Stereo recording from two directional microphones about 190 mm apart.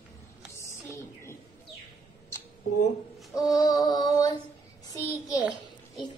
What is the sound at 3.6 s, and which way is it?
Music, 20° left (ahead or behind).